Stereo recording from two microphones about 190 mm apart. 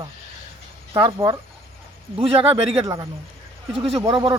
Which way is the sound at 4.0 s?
20° right (ahead or behind).